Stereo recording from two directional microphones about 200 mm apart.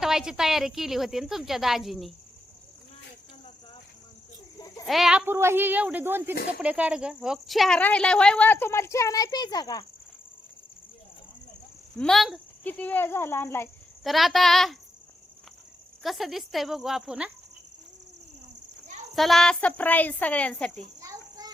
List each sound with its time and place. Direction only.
0.0 s speech: centre (ahead or behind)
4.9 s speech: centre (ahead or behind); by 9.8 s 20° left (ahead or behind)
11.9 s speech: centre (ahead or behind)
14.0 s speech: centre (ahead or behind)
16.0 s speech: centre (ahead or behind)
19.1 s speech: centre (ahead or behind)
21.0 s a sound: 15° right (ahead or behind)